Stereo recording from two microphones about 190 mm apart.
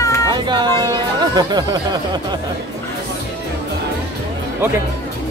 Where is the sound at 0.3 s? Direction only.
25° right (ahead or behind).